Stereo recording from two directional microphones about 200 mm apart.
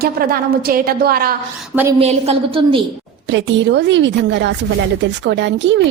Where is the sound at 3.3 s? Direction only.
65° right (ahead or behind).